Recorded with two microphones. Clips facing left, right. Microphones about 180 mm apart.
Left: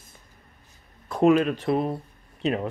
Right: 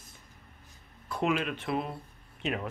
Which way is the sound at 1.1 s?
45° left (ahead or behind).